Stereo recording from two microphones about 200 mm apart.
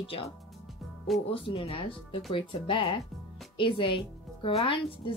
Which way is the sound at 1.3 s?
25° left (ahead or behind).